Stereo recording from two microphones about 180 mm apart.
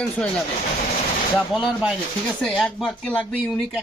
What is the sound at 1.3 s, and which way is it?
Speech, centre (ahead or behind).